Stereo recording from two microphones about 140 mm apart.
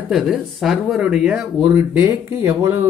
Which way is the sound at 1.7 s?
15° right (ahead or behind).